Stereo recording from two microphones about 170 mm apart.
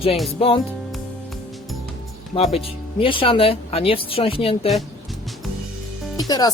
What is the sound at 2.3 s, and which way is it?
Speech, 35° left (ahead or behind).